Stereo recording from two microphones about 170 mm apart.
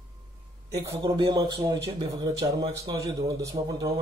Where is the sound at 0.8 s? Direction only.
20° right (ahead or behind).